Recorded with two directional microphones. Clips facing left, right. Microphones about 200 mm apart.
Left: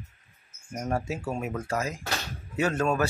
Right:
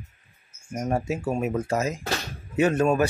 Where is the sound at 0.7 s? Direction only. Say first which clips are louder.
Right 4 dB; 20° right (ahead or behind).